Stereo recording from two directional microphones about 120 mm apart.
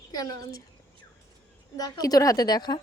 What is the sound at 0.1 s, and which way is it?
Speech, 30° left (ahead or behind).